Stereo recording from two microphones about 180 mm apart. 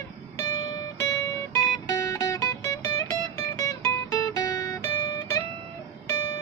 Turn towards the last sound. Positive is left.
turn(degrees=15)  # may be behind; listen again after turning